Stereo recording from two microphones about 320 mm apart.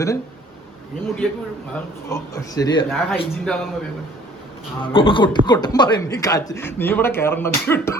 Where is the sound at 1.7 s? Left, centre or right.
Centre.